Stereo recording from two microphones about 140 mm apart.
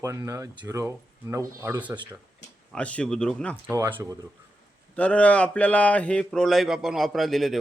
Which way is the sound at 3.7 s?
15° right (ahead or behind).